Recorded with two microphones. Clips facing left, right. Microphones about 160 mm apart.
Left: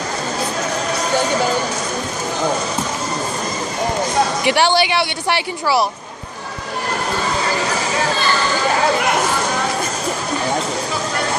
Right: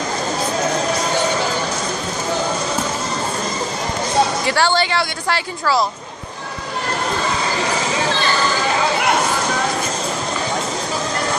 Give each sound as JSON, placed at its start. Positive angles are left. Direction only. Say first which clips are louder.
{"t": 4.5, "sound": "a woman's voice", "louder": "left 2 dB", "side_deg": 15}